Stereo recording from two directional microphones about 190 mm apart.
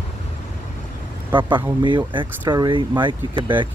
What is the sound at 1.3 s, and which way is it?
Speech, 25° right (ahead or behind).